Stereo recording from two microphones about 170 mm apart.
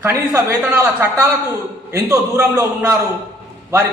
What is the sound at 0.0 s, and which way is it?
A man's voice, 15° right (ahead or behind).